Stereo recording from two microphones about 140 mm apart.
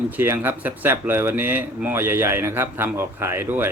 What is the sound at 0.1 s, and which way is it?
Speech, 15° right (ahead or behind).